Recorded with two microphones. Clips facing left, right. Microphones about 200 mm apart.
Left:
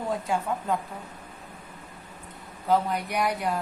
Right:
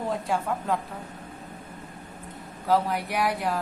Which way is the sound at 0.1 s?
Centre (ahead or behind).